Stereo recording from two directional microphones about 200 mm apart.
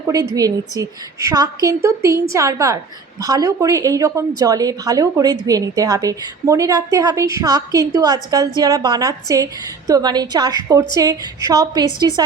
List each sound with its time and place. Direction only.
0.8 s a woman's voice: 15° right (ahead or behind)